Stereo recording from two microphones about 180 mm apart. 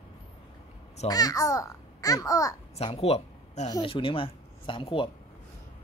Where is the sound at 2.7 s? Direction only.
35° left (ahead or behind).